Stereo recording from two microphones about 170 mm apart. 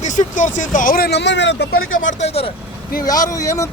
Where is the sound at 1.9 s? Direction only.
45° left (ahead or behind).